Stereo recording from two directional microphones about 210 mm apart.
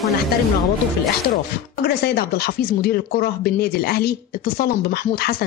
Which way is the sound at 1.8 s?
50° left (ahead or behind).